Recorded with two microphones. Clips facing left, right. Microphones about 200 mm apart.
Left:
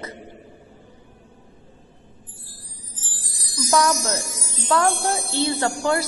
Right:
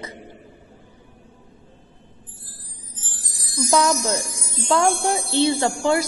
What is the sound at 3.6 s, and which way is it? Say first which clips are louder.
Music: right 1 dB; 15° right (ahead or behind).